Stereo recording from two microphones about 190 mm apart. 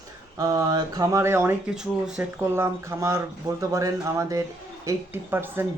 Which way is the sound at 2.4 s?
15° right (ahead or behind).